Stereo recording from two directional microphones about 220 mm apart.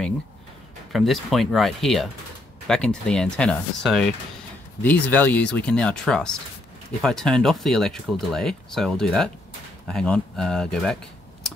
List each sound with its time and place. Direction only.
0.9 s speech: centre (ahead or behind)